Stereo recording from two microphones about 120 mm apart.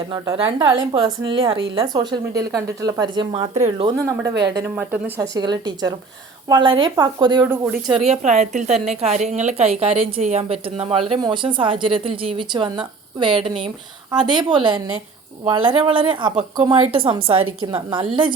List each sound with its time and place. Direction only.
0.3 s a woman's voice: 50° right (ahead or behind); by 3.2 s 35° right (ahead or behind)
3.3 s speech: 55° right (ahead or behind)
4.2 s speech: 25° right (ahead or behind)
4.7 s speech: 15° right (ahead or behind)
5.3 s a woman's voice: 35° right (ahead or behind)
7.4 s speech: 15° right (ahead or behind)
7.7 s speech: 5° right (ahead or behind)
8.0 s speech: 80° right
8.7 s speech: centre (ahead or behind)
9.0 s a woman's voice: 65° right (ahead or behind); by 18.0 s 40° right (ahead or behind)